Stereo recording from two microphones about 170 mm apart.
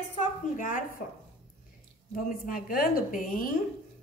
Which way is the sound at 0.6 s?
50° left (ahead or behind).